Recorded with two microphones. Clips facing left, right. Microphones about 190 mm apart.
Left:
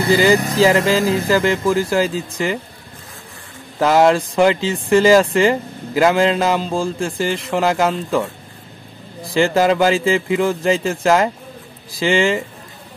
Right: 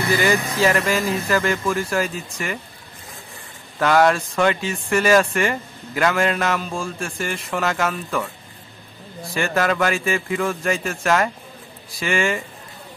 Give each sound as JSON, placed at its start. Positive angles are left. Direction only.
{"t": 0.0, "sound": "speech", "side_deg": 30}
{"t": 0.8, "sound": "speech", "side_deg": 90}
{"t": 1.3, "sound": "speech", "side_deg": 25}
{"t": 3.8, "sound": "speech", "side_deg": 25}
{"t": 9.3, "sound": "speech", "side_deg": 25}